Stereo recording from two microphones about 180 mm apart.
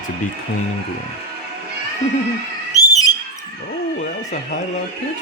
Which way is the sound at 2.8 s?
20° left (ahead or behind).